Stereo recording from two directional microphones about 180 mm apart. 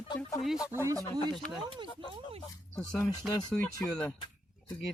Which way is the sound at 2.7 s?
5° left (ahead or behind).